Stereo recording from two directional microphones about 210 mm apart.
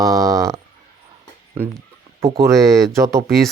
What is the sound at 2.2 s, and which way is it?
Speech, 15° right (ahead or behind).